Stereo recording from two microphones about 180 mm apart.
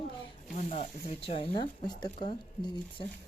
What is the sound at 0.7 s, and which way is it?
Speech, 40° left (ahead or behind).